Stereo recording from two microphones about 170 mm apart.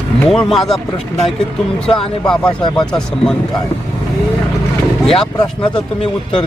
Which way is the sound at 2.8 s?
5° left (ahead or behind).